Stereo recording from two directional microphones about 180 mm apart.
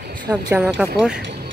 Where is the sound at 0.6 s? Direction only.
10° right (ahead or behind).